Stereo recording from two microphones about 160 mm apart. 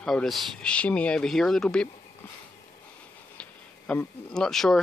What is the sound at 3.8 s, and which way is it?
Speech, 5° left (ahead or behind).